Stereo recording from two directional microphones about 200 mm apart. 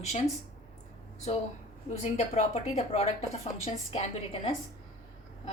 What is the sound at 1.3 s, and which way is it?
A woman's voice, 35° left (ahead or behind).